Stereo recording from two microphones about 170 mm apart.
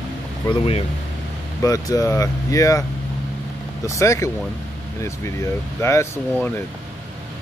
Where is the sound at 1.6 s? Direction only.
20° left (ahead or behind).